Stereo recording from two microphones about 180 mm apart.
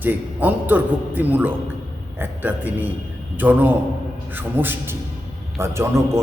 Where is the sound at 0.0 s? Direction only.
10° right (ahead or behind).